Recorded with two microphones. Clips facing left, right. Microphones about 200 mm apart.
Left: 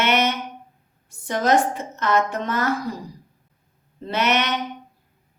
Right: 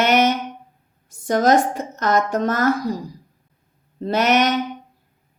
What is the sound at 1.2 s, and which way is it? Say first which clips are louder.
Speech: right 6 dB; 40° right (ahead or behind).